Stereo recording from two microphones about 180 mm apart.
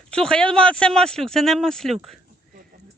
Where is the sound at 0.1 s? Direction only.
5° left (ahead or behind).